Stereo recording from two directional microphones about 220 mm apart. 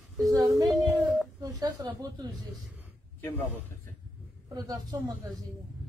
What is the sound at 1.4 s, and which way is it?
Speech, 15° right (ahead or behind).